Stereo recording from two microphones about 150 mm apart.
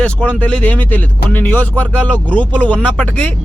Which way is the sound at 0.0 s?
10° left (ahead or behind).